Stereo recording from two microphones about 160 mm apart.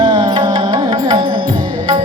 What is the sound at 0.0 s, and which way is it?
Music, 30° right (ahead or behind).